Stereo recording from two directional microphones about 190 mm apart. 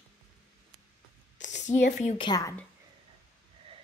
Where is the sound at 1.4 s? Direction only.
70° left (ahead or behind).